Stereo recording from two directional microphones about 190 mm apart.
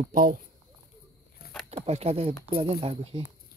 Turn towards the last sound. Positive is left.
turn(degrees=-30)  # may be behind; listen again after turning